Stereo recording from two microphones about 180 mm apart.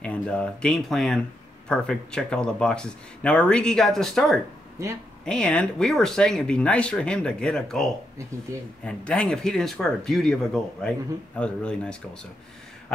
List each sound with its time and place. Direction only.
0.0 s speech: 5° left (ahead or behind)
4.8 s a man's voice: 15° right (ahead or behind)
5.2 s speech: 5° left (ahead or behind)